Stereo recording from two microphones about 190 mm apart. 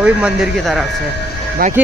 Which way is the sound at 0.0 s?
5° right (ahead or behind).